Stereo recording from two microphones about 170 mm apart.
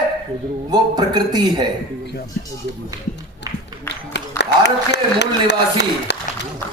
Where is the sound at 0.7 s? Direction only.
25° right (ahead or behind).